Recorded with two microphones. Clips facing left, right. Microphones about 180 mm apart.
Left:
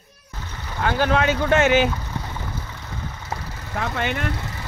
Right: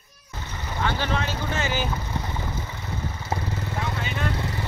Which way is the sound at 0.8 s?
55° left (ahead or behind).